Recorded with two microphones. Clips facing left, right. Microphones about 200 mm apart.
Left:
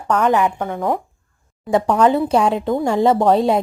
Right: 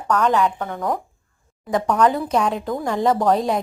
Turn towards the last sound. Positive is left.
turn(degrees=30)  # may be behind; listen again after turning